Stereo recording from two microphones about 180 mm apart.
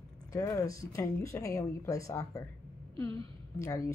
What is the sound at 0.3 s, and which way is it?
Speech, 20° left (ahead or behind).